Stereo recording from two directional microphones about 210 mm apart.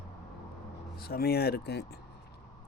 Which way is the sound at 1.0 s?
45° left (ahead or behind).